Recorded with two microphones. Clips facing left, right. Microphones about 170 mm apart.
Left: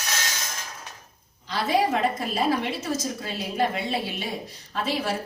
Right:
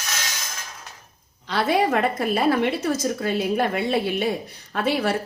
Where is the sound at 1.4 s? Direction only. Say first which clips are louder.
Right 3 dB; 60° right (ahead or behind).